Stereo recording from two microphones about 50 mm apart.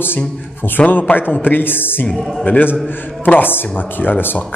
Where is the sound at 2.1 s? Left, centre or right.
Centre.